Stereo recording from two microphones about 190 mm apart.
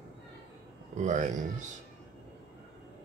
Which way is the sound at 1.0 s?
40° right (ahead or behind).